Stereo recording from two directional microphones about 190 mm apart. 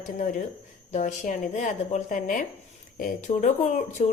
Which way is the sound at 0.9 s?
40° left (ahead or behind).